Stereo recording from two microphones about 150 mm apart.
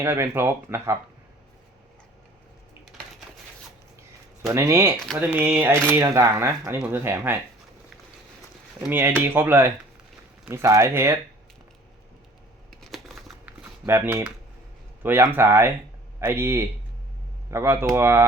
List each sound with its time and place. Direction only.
0.0 s speech: 15° right (ahead or behind)
4.4 s speech: 20° right (ahead or behind)
8.9 s speech: 15° right (ahead or behind)
12.8 s a sound: centre (ahead or behind)
13.8 s speech: 15° right (ahead or behind)